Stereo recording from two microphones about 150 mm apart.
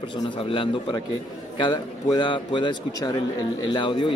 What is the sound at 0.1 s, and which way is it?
Speech, 35° left (ahead or behind).